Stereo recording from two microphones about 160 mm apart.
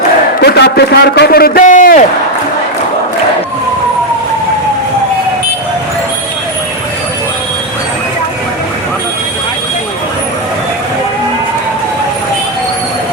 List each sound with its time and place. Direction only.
0.4 s a man's voice: 90° left; by 2.0 s 55° left (ahead or behind)